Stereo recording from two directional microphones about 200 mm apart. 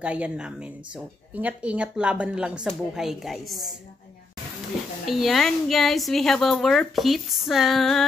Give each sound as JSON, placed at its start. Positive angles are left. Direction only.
{"t": 0.0, "sound": "speech", "side_deg": -5}
{"t": 5.0, "sound": "speech", "side_deg": 0}